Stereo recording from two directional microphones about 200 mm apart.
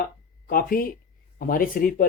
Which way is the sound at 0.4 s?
45° left (ahead or behind).